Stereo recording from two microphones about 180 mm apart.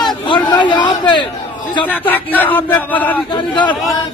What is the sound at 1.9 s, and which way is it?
Speech, 10° left (ahead or behind).